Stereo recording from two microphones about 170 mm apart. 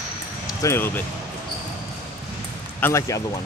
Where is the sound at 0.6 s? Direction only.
15° left (ahead or behind).